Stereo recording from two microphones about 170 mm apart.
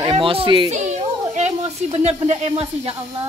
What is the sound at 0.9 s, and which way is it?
Speech, 40° right (ahead or behind).